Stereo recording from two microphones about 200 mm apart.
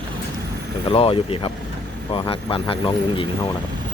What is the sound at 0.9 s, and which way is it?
Speech, 25° left (ahead or behind).